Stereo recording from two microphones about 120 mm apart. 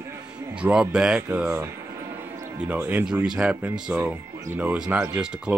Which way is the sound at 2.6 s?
10° right (ahead or behind).